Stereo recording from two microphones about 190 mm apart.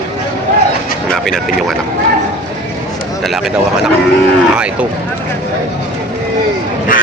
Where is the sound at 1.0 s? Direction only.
5° left (ahead or behind).